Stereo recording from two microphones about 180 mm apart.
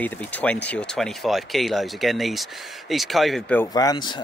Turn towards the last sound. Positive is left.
turn(degrees=25)  # may be behind; listen again after turning